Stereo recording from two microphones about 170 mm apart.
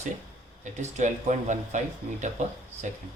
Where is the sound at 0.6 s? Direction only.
45° right (ahead or behind).